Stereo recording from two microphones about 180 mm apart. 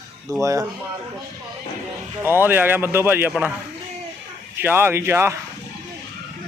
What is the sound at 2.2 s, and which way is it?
Speech, 10° right (ahead or behind).